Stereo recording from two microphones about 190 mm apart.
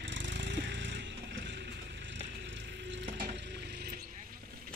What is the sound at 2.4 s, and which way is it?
Frying, 70° right (ahead or behind).